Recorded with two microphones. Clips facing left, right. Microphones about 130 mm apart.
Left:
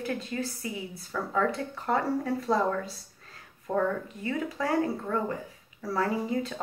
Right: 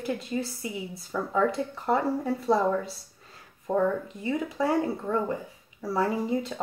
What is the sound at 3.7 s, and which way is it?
Speech, 20° right (ahead or behind).